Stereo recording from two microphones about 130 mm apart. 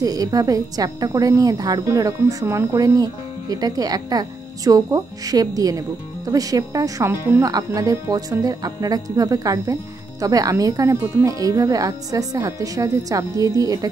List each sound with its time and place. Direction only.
0.0 s a woman's voice: 30° right (ahead or behind)